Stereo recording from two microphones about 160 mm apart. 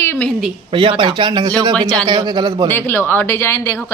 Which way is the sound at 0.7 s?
30° right (ahead or behind).